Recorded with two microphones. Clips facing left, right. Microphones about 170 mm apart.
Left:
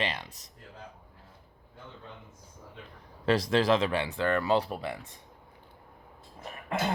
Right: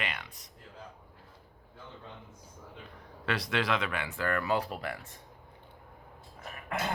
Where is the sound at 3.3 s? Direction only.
35° left (ahead or behind); by 5.1 s 20° left (ahead or behind).